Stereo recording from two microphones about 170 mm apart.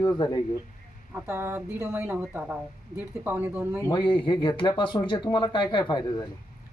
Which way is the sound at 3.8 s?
25° left (ahead or behind).